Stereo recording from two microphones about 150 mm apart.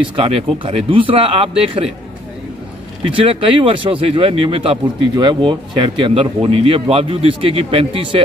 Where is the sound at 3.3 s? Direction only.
35° right (ahead or behind).